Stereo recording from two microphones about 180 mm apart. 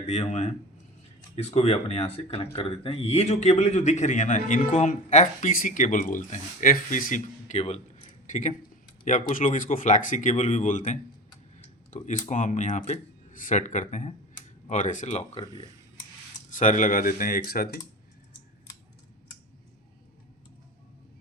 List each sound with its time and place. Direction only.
0.1 s speech: 40° left (ahead or behind)
16.5 s speech: 45° left (ahead or behind)